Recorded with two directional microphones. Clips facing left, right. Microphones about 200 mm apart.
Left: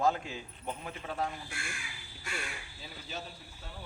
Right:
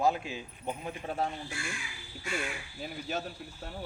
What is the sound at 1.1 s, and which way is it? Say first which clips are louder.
Speech: right 2 dB; 25° right (ahead or behind).